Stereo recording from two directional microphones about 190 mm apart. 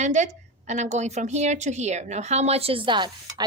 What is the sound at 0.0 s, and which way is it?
A woman's voice, 40° right (ahead or behind).